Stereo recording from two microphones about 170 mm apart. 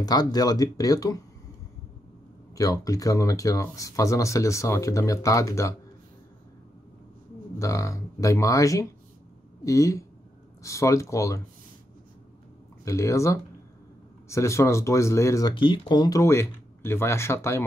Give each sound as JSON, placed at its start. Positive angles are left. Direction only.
{"t": 0.0, "sound": "speech", "side_deg": 25}
{"t": 2.5, "sound": "speech", "side_deg": 20}
{"t": 7.5, "sound": "speech", "side_deg": 20}
{"t": 12.8, "sound": "speech", "side_deg": 20}